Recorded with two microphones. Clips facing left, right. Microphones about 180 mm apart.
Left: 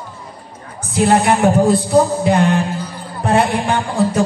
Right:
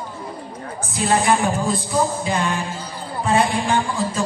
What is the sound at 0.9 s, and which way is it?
Speech, 65° left (ahead or behind).